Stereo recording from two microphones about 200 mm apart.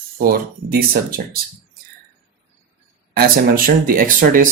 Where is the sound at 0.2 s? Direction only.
50° right (ahead or behind).